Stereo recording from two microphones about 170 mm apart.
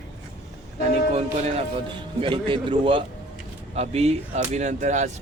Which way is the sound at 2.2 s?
30° right (ahead or behind).